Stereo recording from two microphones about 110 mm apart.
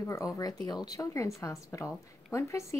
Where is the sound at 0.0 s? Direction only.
30° left (ahead or behind).